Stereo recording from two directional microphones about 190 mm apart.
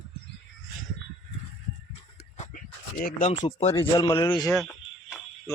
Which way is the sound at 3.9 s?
15° left (ahead or behind).